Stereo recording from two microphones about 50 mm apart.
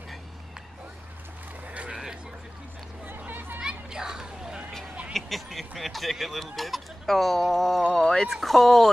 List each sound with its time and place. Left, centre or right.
1.7 s a sound: right
3.1 s a sound: right
3.5 s children playing: centre
5.1 s speech: centre
8.0 s speech: centre
8.3 s speech: centre